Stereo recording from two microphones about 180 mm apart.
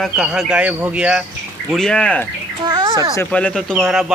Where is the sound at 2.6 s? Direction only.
20° right (ahead or behind).